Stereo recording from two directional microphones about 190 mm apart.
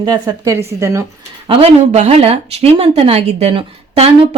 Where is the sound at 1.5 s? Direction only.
30° right (ahead or behind).